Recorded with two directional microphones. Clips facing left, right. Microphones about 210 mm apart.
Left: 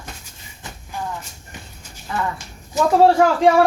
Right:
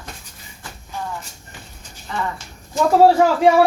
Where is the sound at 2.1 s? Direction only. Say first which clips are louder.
Left 1 dB; 5° left (ahead or behind).